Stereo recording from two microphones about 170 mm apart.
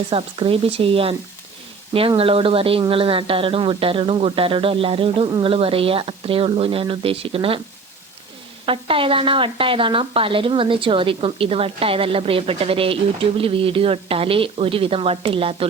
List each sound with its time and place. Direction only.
0.1 s a woman's voice: 35° right (ahead or behind)
8.6 s a woman's voice: 30° right (ahead or behind)